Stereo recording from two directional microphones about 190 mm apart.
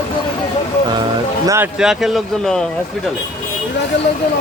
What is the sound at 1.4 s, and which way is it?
Speech, 15° right (ahead or behind).